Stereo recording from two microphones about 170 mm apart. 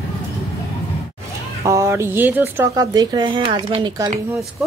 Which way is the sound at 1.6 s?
20° right (ahead or behind).